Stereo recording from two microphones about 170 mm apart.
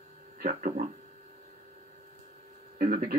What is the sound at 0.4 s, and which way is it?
Speech, 50° right (ahead or behind).